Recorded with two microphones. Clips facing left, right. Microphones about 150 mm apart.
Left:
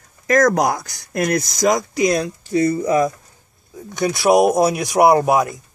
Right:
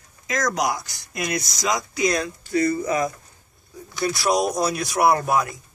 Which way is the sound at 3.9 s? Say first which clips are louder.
Left 7 dB; 20° left (ahead or behind).